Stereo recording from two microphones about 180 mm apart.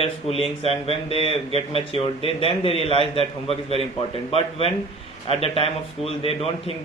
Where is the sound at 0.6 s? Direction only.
30° left (ahead or behind).